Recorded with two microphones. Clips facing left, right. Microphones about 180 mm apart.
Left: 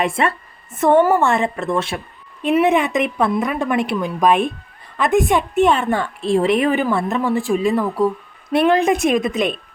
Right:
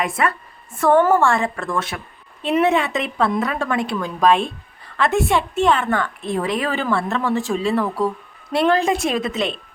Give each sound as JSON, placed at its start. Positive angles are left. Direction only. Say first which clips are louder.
{"t": 0.0, "sound": "a woman's voice", "louder": "left 2 dB", "side_deg": 25}